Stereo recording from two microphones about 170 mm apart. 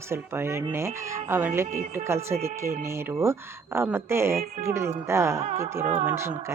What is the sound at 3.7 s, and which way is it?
Speech, 15° right (ahead or behind).